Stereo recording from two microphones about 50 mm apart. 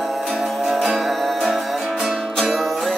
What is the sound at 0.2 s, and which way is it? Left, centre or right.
Music, centre.